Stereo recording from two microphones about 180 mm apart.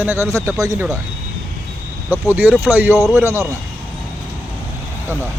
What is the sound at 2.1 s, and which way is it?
Speech, 10° right (ahead or behind).